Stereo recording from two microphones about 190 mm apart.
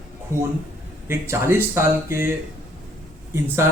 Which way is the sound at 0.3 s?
15° right (ahead or behind).